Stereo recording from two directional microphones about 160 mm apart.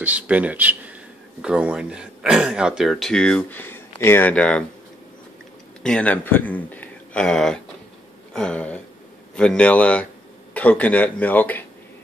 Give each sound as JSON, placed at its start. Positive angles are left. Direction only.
{"t": 0.0, "sound": "speech", "side_deg": -10}
{"t": 5.8, "sound": "speech", "side_deg": 5}